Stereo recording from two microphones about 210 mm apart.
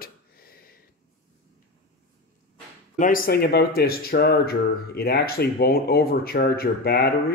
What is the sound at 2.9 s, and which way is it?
Speech, 40° left (ahead or behind).